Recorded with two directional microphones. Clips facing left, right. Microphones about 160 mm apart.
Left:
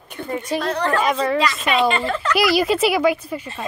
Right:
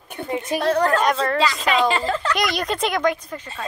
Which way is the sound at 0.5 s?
15° right (ahead or behind).